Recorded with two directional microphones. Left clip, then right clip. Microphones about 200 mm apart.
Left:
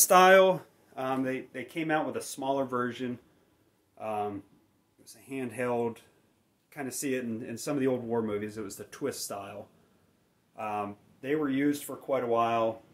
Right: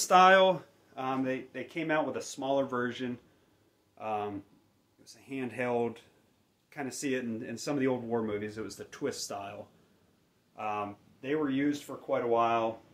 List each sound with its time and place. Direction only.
0.0 s speech: 45° left (ahead or behind)